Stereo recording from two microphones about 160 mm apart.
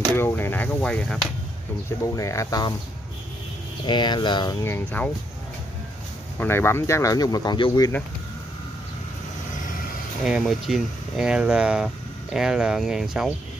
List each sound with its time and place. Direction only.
0.1 s a sound: 15° left (ahead or behind)
1.9 s speech: 20° left (ahead or behind)
3.8 s speech: 30° left (ahead or behind); by 5.1 s 10° left (ahead or behind)
6.4 s speech: 15° left (ahead or behind)
10.2 s speech: centre (ahead or behind)